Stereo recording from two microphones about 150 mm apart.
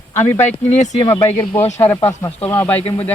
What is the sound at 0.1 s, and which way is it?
Speech, 15° left (ahead or behind).